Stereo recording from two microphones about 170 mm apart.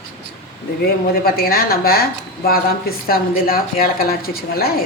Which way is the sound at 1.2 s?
60° left (ahead or behind).